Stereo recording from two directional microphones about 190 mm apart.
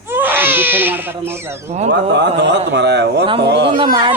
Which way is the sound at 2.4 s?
60° right (ahead or behind).